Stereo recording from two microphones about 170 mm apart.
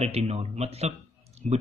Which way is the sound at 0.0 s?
35° right (ahead or behind).